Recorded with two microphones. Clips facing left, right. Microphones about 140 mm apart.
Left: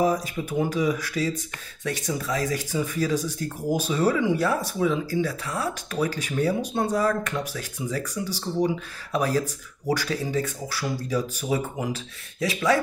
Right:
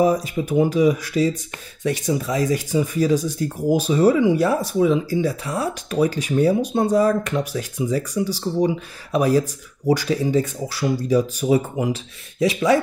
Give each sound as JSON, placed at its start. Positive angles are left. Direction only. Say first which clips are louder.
{"t": 0.0, "sound": "speech", "louder": "right 5 dB", "side_deg": -20}